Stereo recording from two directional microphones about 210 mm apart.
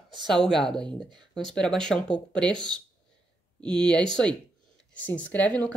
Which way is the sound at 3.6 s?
5° left (ahead or behind).